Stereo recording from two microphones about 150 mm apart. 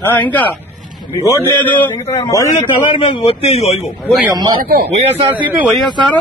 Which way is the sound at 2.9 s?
40° left (ahead or behind).